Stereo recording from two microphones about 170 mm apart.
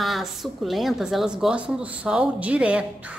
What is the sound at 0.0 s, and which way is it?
A woman's voice, centre (ahead or behind).